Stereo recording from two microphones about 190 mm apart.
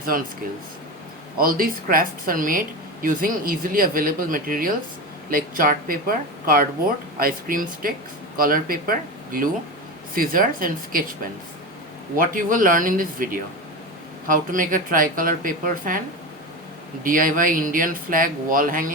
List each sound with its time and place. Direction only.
0.1 s speech: 45° right (ahead or behind)
1.4 s speech: 50° right (ahead or behind)
12.1 s speech: 45° right (ahead or behind)
17.0 s speech: 45° right (ahead or behind)